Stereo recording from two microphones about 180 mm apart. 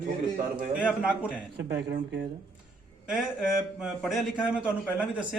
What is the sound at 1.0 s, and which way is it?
Speech, 5° right (ahead or behind).